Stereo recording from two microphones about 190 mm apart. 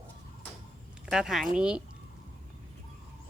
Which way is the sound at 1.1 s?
Centre (ahead or behind).